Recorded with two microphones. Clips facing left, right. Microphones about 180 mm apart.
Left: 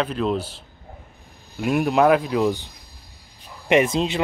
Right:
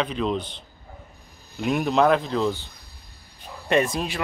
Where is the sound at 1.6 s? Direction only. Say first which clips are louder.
Left 2 dB; 5° left (ahead or behind).